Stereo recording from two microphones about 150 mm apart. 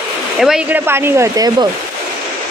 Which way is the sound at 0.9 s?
15° right (ahead or behind).